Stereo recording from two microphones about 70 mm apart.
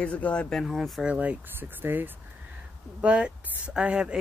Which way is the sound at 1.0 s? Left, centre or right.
Centre.